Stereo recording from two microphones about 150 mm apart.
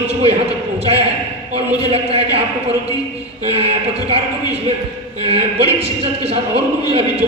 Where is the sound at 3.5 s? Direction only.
45° right (ahead or behind).